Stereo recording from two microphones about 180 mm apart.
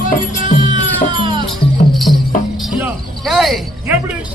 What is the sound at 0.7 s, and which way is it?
Music, 25° right (ahead or behind).